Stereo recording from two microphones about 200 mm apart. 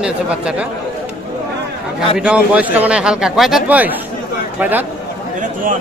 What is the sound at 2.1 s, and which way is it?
A man's voice, 5° right (ahead or behind).